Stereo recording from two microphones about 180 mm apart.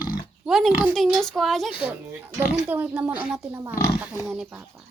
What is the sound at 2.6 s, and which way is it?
Speech, 10° right (ahead or behind).